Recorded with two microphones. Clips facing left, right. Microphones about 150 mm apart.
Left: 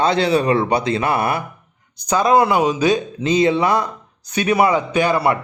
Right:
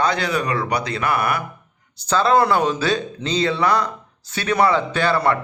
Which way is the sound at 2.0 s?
15° left (ahead or behind).